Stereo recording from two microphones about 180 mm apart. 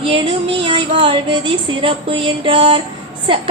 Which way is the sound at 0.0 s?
30° right (ahead or behind).